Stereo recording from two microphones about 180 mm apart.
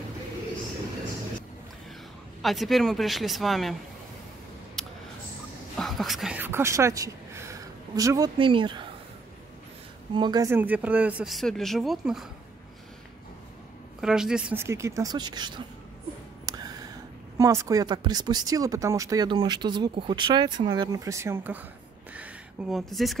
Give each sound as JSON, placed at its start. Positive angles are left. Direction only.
{"t": 2.4, "sound": "speech", "side_deg": 0}
{"t": 4.8, "sound": "a sound", "side_deg": 5}
{"t": 5.8, "sound": "speech", "side_deg": 0}
{"t": 10.1, "sound": "speech", "side_deg": -25}
{"t": 14.0, "sound": "speech", "side_deg": -5}
{"t": 16.4, "sound": "a sound", "side_deg": -20}
{"t": 17.4, "sound": "speech", "side_deg": -20}